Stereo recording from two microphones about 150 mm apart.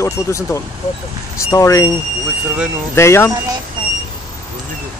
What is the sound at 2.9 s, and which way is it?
Speech, 15° left (ahead or behind).